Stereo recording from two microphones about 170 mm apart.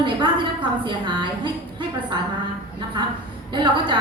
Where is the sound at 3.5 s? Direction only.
30° right (ahead or behind).